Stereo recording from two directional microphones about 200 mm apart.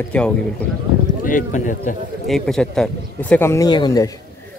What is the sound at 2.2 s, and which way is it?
Speech, centre (ahead or behind).